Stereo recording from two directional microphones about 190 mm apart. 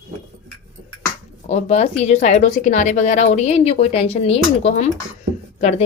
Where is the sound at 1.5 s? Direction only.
35° left (ahead or behind).